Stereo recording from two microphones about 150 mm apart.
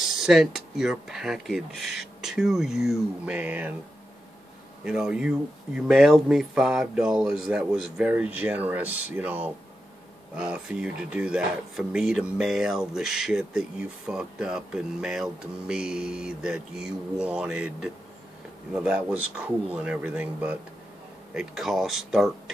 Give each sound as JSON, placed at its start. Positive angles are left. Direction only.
{"t": 0.0, "sound": "speech", "side_deg": 0}
{"t": 4.8, "sound": "speech", "side_deg": -5}